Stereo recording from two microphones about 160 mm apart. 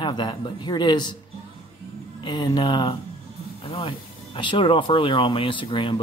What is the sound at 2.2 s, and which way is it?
A man's voice, 30° left (ahead or behind).